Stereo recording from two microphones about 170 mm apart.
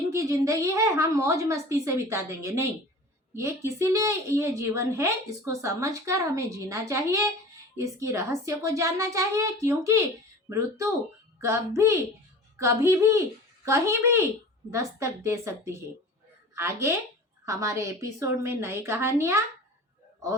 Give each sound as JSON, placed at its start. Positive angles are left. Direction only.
{"t": 0.1, "sound": "a woman's voice", "side_deg": -15}
{"t": 11.3, "sound": "a woman's voice", "side_deg": -15}